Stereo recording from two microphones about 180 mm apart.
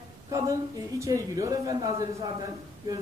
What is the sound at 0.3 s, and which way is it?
A woman's voice, 20° right (ahead or behind).